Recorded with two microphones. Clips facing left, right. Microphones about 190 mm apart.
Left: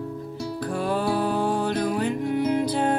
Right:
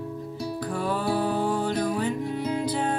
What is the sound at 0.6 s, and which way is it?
Music, 55° left (ahead or behind).